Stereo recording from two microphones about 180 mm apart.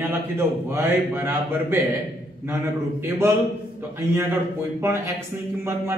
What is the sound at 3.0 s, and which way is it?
Speech, 15° right (ahead or behind).